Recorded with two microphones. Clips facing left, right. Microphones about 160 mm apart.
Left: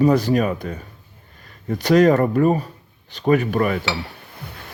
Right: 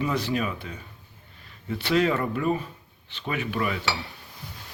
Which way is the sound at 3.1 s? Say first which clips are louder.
Left 13 dB; 40° left (ahead or behind).